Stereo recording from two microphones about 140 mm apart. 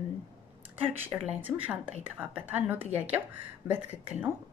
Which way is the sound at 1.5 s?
10° right (ahead or behind).